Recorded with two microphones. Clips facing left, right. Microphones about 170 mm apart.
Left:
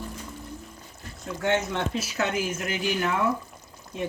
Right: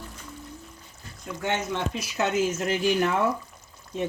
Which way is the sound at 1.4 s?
15° right (ahead or behind).